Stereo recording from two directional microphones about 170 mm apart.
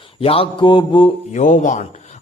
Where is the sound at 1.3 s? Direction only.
45° left (ahead or behind).